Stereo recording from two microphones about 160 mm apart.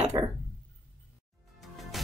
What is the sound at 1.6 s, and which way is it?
Music, centre (ahead or behind).